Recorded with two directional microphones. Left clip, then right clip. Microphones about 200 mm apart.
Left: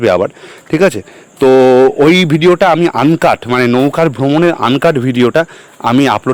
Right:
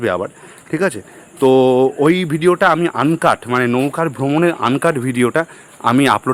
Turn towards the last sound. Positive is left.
turn(degrees=20)  # may be behind; listen again after turning